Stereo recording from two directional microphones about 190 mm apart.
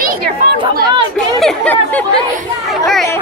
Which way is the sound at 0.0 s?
50° right (ahead or behind).